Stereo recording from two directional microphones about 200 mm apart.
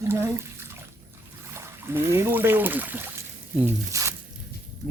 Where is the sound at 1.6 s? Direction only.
10° right (ahead or behind).